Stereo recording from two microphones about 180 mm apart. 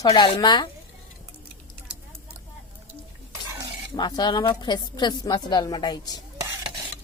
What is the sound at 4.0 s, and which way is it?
A woman's voice, 25° left (ahead or behind).